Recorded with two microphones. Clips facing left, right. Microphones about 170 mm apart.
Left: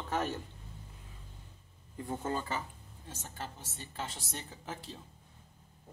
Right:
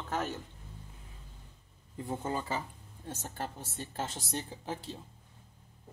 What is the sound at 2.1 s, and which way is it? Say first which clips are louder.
Speech: right 1 dB; 10° right (ahead or behind).